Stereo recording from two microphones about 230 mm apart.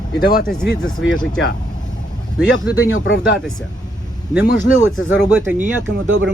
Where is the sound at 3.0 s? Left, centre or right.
Left.